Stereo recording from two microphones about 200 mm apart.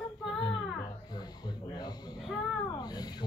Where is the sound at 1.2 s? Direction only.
20° left (ahead or behind).